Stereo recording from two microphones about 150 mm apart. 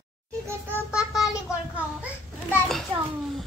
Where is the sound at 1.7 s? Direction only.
10° right (ahead or behind).